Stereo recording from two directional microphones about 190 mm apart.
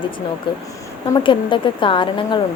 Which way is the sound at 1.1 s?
25° left (ahead or behind).